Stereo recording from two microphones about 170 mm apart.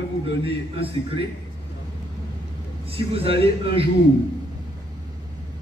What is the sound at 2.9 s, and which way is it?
Speech, 35° right (ahead or behind).